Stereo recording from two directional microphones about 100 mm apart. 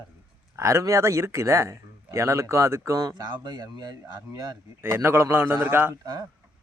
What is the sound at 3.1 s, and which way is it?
Speech, 45° right (ahead or behind).